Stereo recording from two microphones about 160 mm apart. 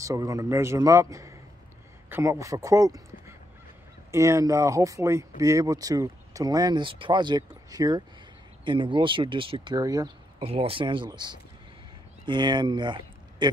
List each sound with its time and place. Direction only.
0.0 s speech: 20° right (ahead or behind)
2.0 s a sound: 15° right (ahead or behind)
2.4 s speech: 20° right (ahead or behind)
10.4 s speech: 35° right (ahead or behind)